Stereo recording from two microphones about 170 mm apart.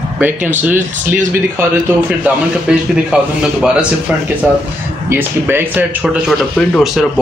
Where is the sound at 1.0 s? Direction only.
10° right (ahead or behind).